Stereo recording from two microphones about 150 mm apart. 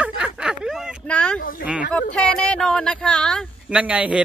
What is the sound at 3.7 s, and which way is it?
Speech, 10° right (ahead or behind).